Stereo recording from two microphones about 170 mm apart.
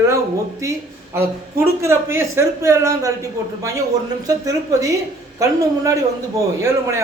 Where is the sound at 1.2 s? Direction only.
15° right (ahead or behind).